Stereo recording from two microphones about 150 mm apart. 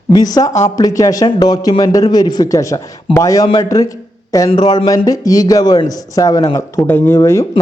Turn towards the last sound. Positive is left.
turn(degrees=20)  # may be behind; listen again after turning